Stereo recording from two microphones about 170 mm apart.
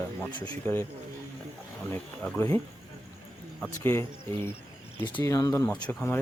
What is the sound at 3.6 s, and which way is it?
Speech, 15° left (ahead or behind).